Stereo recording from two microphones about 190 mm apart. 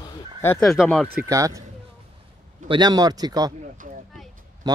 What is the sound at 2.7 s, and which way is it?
Speech, 20° right (ahead or behind).